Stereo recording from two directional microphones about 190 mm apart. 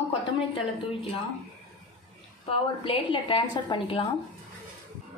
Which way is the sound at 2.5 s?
25° left (ahead or behind).